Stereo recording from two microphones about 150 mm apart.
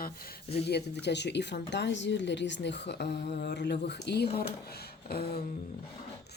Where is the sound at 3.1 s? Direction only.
90° left.